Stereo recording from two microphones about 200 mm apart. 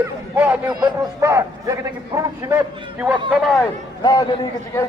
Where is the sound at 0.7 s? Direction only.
20° right (ahead or behind).